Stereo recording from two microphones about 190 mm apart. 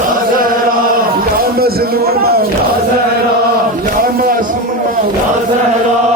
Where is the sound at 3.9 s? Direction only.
50° right (ahead or behind).